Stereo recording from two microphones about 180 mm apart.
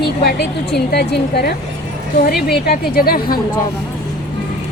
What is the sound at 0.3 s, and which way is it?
A woman's voice, 65° left (ahead or behind).